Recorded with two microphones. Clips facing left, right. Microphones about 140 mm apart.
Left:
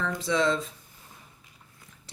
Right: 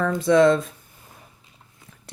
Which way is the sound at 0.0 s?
55° right (ahead or behind).